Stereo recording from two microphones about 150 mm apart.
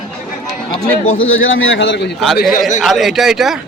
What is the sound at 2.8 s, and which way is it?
Speech, centre (ahead or behind).